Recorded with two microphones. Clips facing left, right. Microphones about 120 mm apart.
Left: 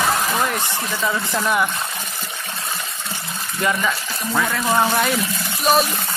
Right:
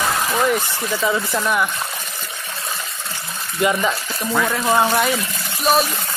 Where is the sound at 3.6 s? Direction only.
20° right (ahead or behind); by 5.9 s centre (ahead or behind).